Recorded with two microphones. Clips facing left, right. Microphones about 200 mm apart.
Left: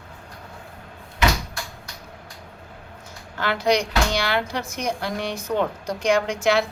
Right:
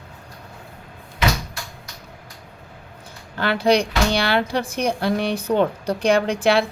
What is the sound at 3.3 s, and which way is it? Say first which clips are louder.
Speech: right 3 dB; 30° right (ahead or behind).